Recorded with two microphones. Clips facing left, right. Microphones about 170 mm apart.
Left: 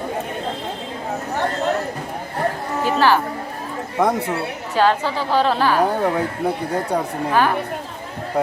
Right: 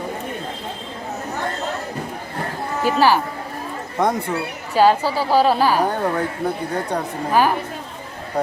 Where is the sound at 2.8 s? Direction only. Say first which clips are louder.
Right 1 dB; 10° right (ahead or behind).